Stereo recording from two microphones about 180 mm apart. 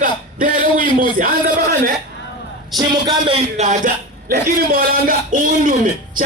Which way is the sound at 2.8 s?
25° right (ahead or behind).